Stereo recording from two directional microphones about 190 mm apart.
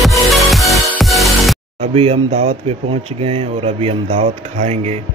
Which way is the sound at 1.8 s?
35° right (ahead or behind).